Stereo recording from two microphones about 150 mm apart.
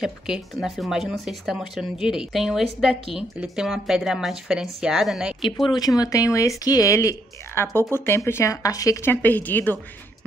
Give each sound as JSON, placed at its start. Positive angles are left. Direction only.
{"t": 0.0, "sound": "speech", "side_deg": 0}
{"t": 5.7, "sound": "speech", "side_deg": 25}